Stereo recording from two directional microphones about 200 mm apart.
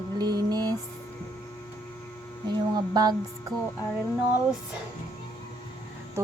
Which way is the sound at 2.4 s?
20° right (ahead or behind).